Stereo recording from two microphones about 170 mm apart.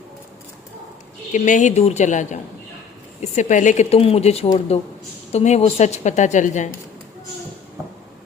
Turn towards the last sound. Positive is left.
turn(degrees=45)  # may be behind; listen again after turning